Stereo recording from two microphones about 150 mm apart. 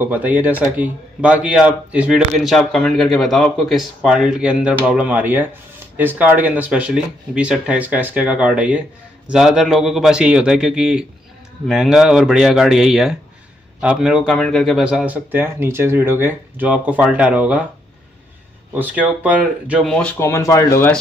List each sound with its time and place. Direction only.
0.0 s a man's voice: 10° right (ahead or behind)
18.7 s speech: 10° right (ahead or behind)
19.8 s speech: 5° left (ahead or behind)